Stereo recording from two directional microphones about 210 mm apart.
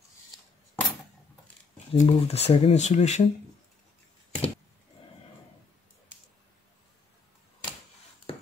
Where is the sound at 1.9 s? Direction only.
30° left (ahead or behind).